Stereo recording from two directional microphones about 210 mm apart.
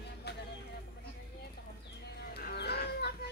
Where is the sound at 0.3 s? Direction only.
50° left (ahead or behind).